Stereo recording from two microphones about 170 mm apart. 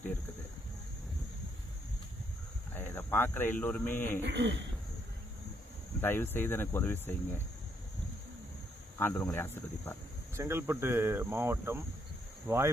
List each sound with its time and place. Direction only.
2.7 s speech: 15° left (ahead or behind)
4.2 s throat clearing: 90° right
6.0 s speech: 10° left (ahead or behind)
9.0 s speech: 15° left (ahead or behind)
10.3 s speech: 15° right (ahead or behind)